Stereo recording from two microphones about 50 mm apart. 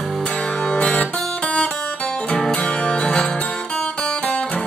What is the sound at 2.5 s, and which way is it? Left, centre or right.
Music, centre.